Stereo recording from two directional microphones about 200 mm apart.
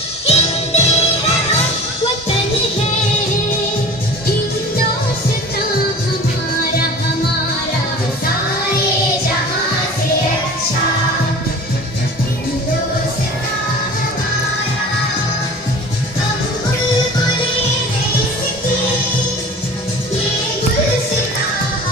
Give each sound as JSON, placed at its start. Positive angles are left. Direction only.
{"t": 0.3, "sound": "music", "side_deg": 30}